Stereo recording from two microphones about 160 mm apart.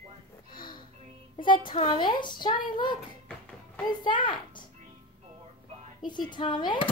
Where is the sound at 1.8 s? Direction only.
30° left (ahead or behind).